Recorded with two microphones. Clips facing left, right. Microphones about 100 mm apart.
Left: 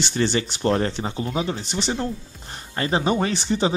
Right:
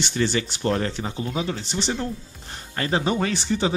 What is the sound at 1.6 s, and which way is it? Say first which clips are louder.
Speech: left 1 dB; 15° left (ahead or behind).